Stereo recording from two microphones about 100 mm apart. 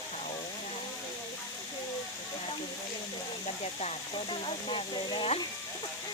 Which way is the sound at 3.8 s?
80° left.